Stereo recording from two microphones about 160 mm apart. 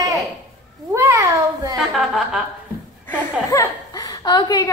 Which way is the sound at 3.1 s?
15° left (ahead or behind).